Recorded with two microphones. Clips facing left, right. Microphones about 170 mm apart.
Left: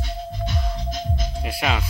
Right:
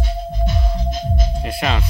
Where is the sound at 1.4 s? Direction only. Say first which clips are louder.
Right 1 dB; 5° left (ahead or behind).